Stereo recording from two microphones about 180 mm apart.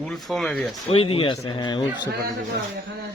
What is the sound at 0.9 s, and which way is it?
Speech, 30° left (ahead or behind).